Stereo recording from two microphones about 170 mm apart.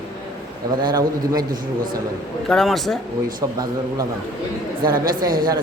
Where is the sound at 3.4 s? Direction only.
20° right (ahead or behind).